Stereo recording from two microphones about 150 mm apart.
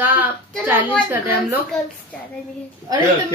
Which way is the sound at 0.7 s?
10° right (ahead or behind).